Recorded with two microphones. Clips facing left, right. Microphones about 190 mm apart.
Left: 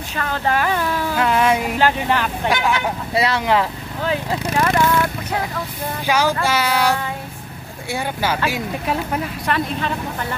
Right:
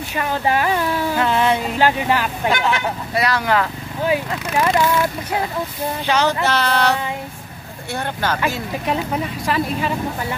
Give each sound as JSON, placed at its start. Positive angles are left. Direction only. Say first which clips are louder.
{"t": 0.1, "sound": "speech", "louder": "right 1 dB", "side_deg": -15}
{"t": 1.1, "sound": "speech", "louder": "left 2 dB", "side_deg": 5}
{"t": 1.8, "sound": "speech", "louder": "right 1 dB", "side_deg": -15}
{"t": 2.5, "sound": "speech", "louder": "left 1 dB", "side_deg": 10}
{"t": 3.2, "sound": "speech", "louder": "left 1 dB", "side_deg": 25}
{"t": 4.6, "sound": "speech", "louder": "right 1 dB", "side_deg": -15}
{"t": 6.0, "sound": "speech", "louder": "even", "side_deg": 10}
{"t": 7.9, "sound": "speech", "louder": "left 1 dB", "side_deg": 10}